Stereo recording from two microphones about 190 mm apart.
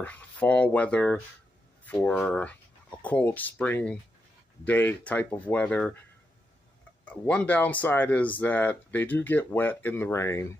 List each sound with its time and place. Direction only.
0.0 s speech: 10° left (ahead or behind)
7.1 s speech: 5° left (ahead or behind)